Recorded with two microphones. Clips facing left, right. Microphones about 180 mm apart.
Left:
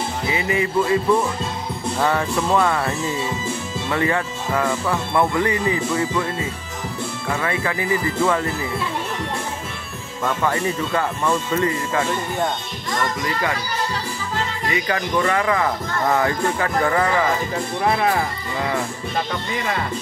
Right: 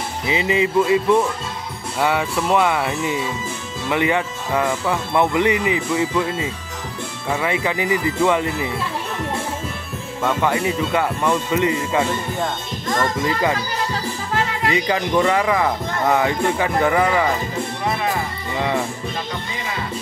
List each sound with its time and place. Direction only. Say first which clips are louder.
0.3 s speech: right 4 dB; 20° right (ahead or behind)
2.0 s speech: right 1 dB; 10° right (ahead or behind)
10.4 s speech: right 1 dB; 15° right (ahead or behind)
13.2 s speech: right 4 dB; 20° right (ahead or behind)
14.7 s speech: right 2 dB; 20° right (ahead or behind)